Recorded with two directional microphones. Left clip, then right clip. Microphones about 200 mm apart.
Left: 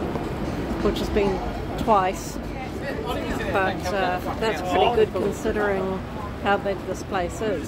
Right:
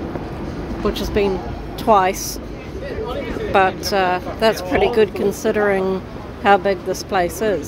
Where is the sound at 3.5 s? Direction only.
50° right (ahead or behind).